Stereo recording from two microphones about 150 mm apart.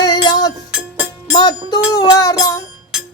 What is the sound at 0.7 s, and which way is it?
Music, 10° right (ahead or behind).